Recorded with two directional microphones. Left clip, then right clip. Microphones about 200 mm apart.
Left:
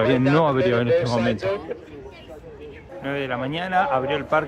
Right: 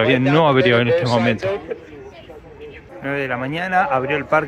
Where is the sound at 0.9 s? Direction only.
45° right (ahead or behind).